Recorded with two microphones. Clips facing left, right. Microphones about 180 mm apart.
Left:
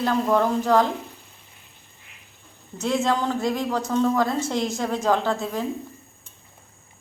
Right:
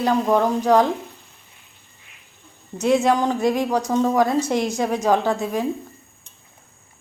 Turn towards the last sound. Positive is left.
turn(degrees=-15)  # may be behind; listen again after turning